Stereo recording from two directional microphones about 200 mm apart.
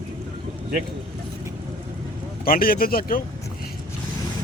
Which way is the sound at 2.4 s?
45° left (ahead or behind).